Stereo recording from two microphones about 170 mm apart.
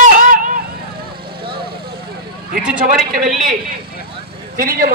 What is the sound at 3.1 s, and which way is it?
Speech, 50° right (ahead or behind).